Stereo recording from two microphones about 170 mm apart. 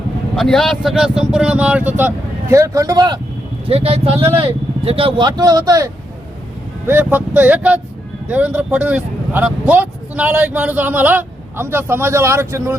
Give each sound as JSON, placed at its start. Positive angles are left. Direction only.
{"t": 0.3, "sound": "speech", "side_deg": 0}
{"t": 3.7, "sound": "speech", "side_deg": -35}